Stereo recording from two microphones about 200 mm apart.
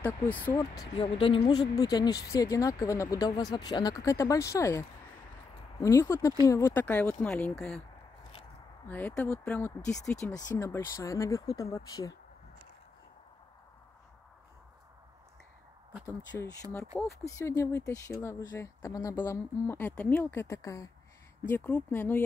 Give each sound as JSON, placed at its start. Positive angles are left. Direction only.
{"t": 0.0, "sound": "speech", "side_deg": 10}
{"t": 0.9, "sound": "speech", "side_deg": 30}
{"t": 8.8, "sound": "speech", "side_deg": 10}
{"t": 16.8, "sound": "speech", "side_deg": -15}
{"t": 17.4, "sound": "speech", "side_deg": 15}